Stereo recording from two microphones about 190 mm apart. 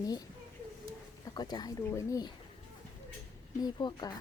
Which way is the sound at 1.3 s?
20° left (ahead or behind).